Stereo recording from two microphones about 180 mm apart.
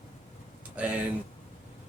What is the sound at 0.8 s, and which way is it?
Speech, 10° right (ahead or behind).